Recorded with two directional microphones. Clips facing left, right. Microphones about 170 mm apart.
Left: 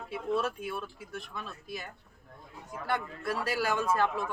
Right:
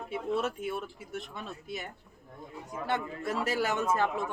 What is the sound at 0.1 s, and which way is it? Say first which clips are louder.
Speech: even; 25° right (ahead or behind).